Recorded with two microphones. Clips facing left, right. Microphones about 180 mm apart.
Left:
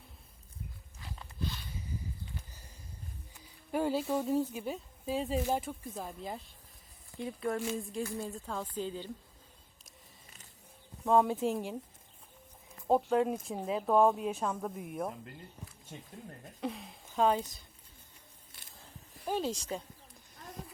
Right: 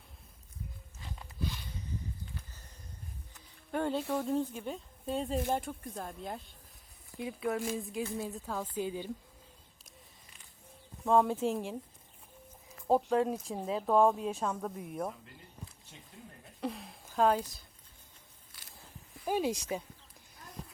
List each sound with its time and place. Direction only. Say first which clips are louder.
3.3 s music: left 1 dB; 5° left (ahead or behind)
4.1 s a woman's voice: left 1 dB; 10° left (ahead or behind); by 9.1 s 10° right (ahead or behind)
9.8 s a sound: left 1 dB; 40° left (ahead or behind)
11.0 s speech: even; centre (ahead or behind)
16.6 s speech: right 1 dB; centre (ahead or behind)
19.2 s a woman's voice: right 2 dB; 10° right (ahead or behind)